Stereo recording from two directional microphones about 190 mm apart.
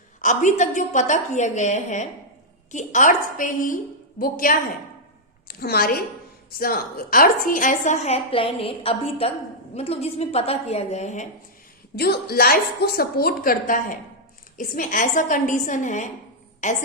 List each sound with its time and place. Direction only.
0.2 s a woman's voice: 40° left (ahead or behind)
11.9 s a woman's voice: 55° left (ahead or behind); by 16.8 s 40° left (ahead or behind)